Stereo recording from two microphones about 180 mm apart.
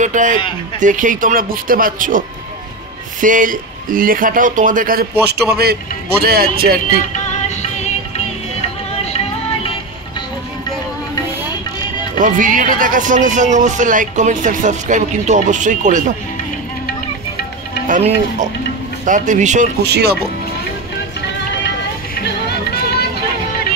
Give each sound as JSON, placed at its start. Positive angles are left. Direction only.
{"t": 0.0, "sound": "a man's voice", "side_deg": -45}
{"t": 8.9, "sound": "music", "side_deg": 35}
{"t": 12.2, "sound": "speech", "side_deg": -45}
{"t": 17.8, "sound": "speech", "side_deg": -45}
{"t": 19.9, "sound": "a man's voice", "side_deg": -65}
{"t": 22.2, "sound": "music", "side_deg": 65}